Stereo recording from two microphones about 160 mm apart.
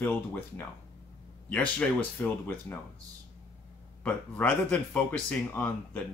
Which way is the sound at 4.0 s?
10° left (ahead or behind).